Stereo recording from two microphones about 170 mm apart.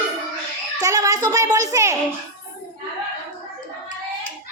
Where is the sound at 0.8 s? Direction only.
20° right (ahead or behind).